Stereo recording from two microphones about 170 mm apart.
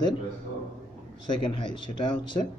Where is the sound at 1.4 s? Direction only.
30° left (ahead or behind).